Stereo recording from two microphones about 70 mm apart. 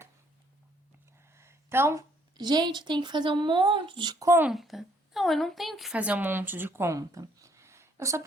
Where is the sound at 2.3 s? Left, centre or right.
Right.